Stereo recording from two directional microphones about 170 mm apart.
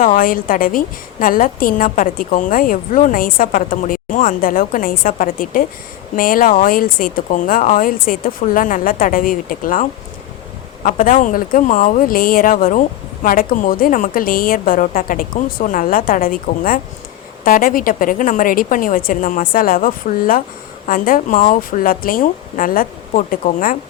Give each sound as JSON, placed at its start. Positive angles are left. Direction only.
{"t": 0.0, "sound": "a woman's voice", "side_deg": 55}
{"t": 10.8, "sound": "a woman's voice", "side_deg": 50}